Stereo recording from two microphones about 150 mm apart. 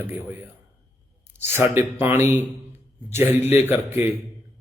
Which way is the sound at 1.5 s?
15° right (ahead or behind).